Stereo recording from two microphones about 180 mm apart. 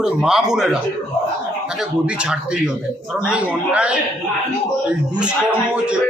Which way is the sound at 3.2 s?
5° right (ahead or behind).